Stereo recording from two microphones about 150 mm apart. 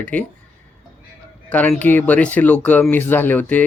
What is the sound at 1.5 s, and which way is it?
Speech, 10° left (ahead or behind).